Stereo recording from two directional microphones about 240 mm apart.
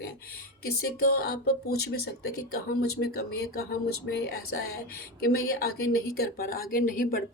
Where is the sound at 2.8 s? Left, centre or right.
Left.